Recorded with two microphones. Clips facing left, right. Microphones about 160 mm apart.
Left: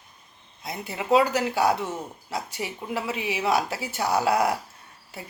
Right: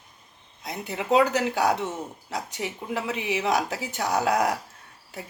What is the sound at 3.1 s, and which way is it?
A woman's voice, 10° left (ahead or behind).